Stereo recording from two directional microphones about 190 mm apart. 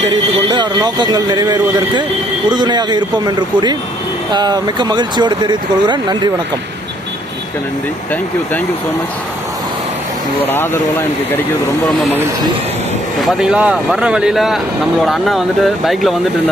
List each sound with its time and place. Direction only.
0.0 s speech: 20° right (ahead or behind)
10.4 s speech: 10° left (ahead or behind)
13.2 s speech: centre (ahead or behind)